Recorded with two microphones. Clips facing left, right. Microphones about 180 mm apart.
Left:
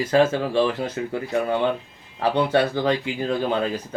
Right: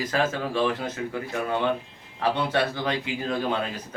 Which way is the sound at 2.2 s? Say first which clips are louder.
Left 5 dB; 30° left (ahead or behind).